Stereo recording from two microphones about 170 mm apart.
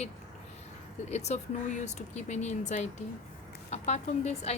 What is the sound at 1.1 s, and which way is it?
A woman's voice, 40° left (ahead or behind).